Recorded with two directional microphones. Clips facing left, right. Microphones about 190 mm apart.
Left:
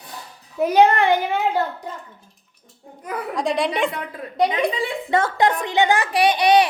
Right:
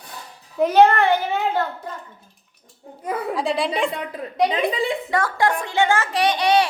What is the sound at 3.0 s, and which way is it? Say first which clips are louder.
Speech: right 3 dB; 25° right (ahead or behind).